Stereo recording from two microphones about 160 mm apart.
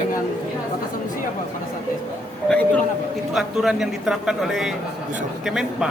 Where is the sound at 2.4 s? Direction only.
5° left (ahead or behind).